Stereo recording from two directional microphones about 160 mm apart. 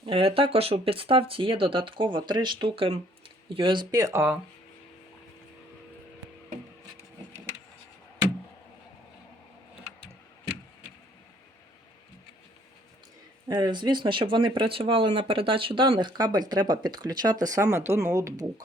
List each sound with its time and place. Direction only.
0.0 s speech: 35° right (ahead or behind); by 4.4 s 15° right (ahead or behind)
13.5 s speech: 25° right (ahead or behind)